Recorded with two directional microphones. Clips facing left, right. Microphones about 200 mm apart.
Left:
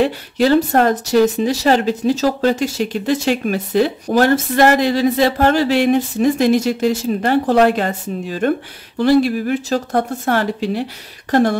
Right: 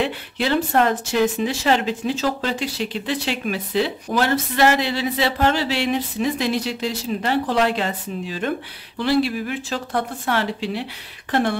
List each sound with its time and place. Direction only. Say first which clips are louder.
0.0 s speech: left 8 dB; 40° left (ahead or behind)